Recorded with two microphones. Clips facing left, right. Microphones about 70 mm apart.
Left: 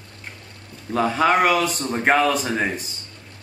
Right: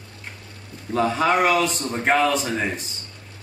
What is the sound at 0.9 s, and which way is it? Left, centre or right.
Speech, centre.